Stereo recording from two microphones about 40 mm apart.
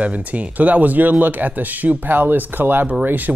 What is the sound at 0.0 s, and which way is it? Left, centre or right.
Speech, right.